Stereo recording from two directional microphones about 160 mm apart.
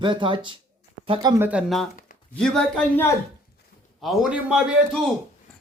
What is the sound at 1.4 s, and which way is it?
A man's voice, 10° right (ahead or behind).